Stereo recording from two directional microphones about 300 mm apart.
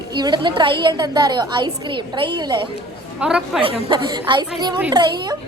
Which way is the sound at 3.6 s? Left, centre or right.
Centre.